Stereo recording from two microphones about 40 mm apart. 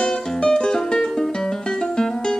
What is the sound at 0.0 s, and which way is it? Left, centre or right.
Music, centre.